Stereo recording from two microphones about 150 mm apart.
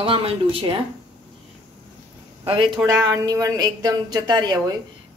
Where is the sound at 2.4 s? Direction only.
35° right (ahead or behind).